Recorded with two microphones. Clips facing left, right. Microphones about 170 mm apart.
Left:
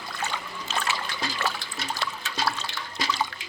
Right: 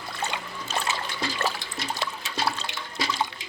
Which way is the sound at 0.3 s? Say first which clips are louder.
Right 1 dB; 20° right (ahead or behind).